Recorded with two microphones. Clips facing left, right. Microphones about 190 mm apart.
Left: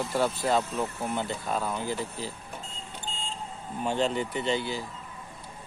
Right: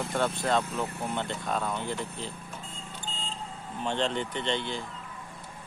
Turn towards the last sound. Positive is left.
turn(degrees=5)  # may be behind; listen again after turning